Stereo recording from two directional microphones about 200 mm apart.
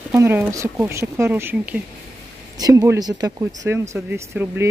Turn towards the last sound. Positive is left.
turn(degrees=-10)  # may be behind; listen again after turning